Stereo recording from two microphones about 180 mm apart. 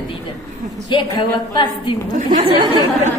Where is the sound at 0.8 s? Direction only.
25° left (ahead or behind).